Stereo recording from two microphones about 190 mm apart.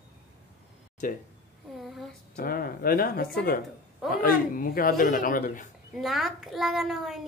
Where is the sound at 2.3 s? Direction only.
50° left (ahead or behind).